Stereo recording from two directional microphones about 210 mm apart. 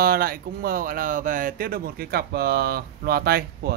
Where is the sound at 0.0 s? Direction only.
45° right (ahead or behind).